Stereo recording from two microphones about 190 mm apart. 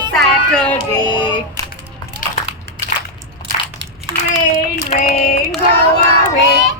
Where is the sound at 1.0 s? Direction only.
25° left (ahead or behind).